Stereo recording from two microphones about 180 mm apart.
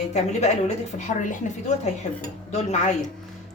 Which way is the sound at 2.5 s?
40° left (ahead or behind).